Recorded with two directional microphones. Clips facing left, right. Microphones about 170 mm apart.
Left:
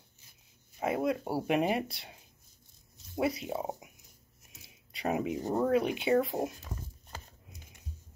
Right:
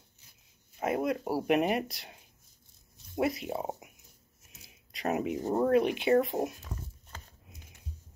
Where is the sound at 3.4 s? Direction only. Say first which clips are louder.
Right 1 dB; 25° right (ahead or behind).